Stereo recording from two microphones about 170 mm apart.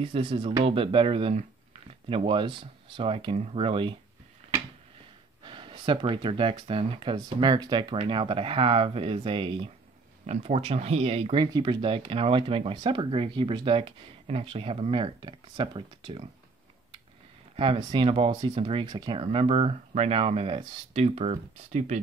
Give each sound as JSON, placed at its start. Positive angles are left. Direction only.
{"t": 0.0, "sound": "speech", "side_deg": -30}
{"t": 5.4, "sound": "speech", "side_deg": -30}
{"t": 17.6, "sound": "speech", "side_deg": -30}